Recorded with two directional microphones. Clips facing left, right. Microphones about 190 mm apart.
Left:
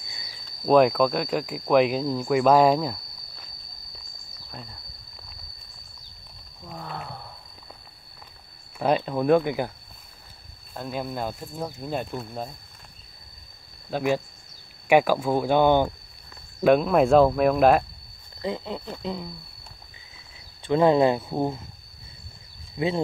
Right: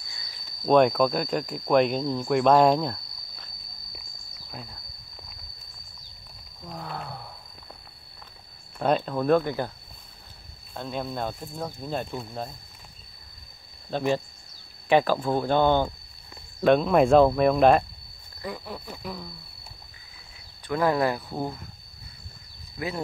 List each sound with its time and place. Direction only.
0.7 s speech: centre (ahead or behind)
4.5 s speech: 5° right (ahead or behind)
6.6 s speech: centre (ahead or behind)
8.7 s speech: 5° left (ahead or behind)
10.7 s speech: 5° left (ahead or behind)
13.8 s speech: 10° left (ahead or behind)
18.4 s speech: 20° left (ahead or behind)
20.6 s speech: 25° left (ahead or behind)
22.8 s speech: 20° left (ahead or behind)